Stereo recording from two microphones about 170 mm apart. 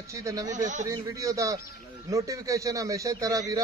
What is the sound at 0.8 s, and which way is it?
A man's voice, 20° right (ahead or behind).